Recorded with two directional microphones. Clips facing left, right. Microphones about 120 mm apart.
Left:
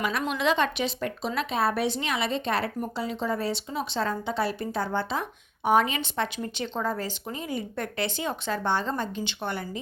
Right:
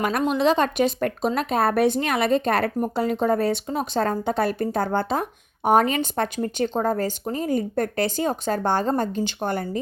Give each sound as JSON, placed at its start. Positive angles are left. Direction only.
{"t": 0.2, "sound": "a woman's voice", "side_deg": -35}